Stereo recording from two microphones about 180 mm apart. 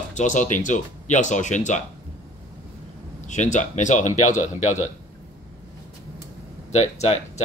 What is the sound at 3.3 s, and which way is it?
Speech, 40° left (ahead or behind).